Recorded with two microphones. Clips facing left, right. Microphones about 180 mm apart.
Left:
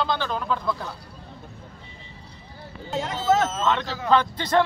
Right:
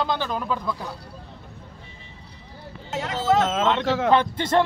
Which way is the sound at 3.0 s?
90° right.